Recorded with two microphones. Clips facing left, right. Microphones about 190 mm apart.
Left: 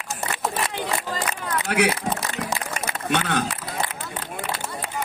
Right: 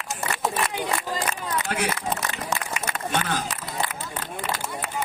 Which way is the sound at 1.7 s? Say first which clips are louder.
Left 8 dB; 70° left (ahead or behind).